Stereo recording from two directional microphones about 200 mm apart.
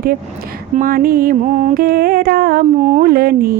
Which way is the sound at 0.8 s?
45° right (ahead or behind).